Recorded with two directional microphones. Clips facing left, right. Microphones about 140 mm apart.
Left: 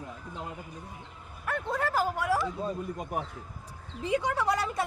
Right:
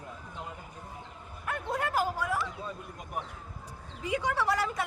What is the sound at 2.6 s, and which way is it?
Speech, 40° left (ahead or behind).